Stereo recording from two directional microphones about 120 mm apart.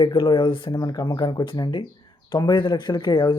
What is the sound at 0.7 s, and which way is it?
Speech, 35° left (ahead or behind).